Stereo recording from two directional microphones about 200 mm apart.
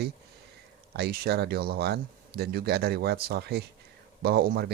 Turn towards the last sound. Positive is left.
turn(degrees=-50)  # may be behind; listen again after turning